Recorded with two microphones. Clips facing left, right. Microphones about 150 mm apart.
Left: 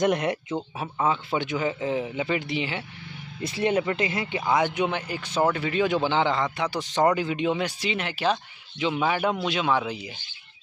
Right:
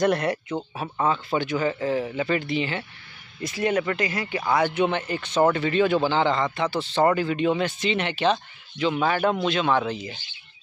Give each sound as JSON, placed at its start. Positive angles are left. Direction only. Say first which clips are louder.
{"t": 0.0, "sound": "speech", "louder": "right 1 dB", "side_deg": 15}
{"t": 3.4, "sound": "speech", "louder": "even", "side_deg": 25}